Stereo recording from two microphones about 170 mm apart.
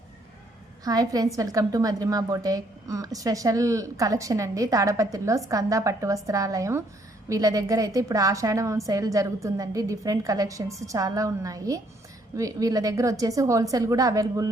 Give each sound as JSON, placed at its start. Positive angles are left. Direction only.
{"t": 0.9, "sound": "a woman's voice", "side_deg": -20}